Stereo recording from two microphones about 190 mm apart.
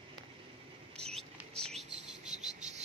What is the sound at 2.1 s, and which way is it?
Cricket, 5° right (ahead or behind).